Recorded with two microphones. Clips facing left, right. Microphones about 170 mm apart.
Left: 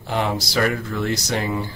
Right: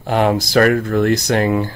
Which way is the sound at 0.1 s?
55° right (ahead or behind).